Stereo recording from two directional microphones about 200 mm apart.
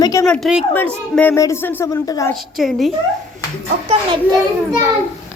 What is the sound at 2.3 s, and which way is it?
Speech, centre (ahead or behind).